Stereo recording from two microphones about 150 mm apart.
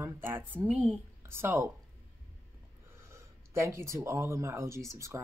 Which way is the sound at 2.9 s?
20° right (ahead or behind).